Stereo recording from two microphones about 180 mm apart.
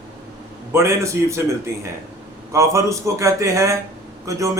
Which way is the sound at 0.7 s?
15° right (ahead or behind).